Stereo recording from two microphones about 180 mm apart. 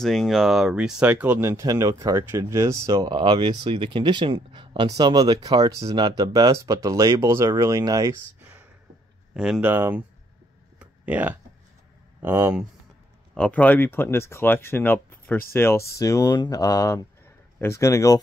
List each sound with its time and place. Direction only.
0.0 s speech: centre (ahead or behind)
10.8 s a sound: 10° right (ahead or behind)
12.2 s speech: 15° right (ahead or behind)
13.3 s speech: 5° left (ahead or behind)